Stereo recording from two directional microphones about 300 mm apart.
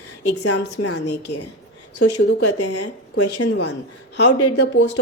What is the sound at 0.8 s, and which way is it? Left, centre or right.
Speech, left.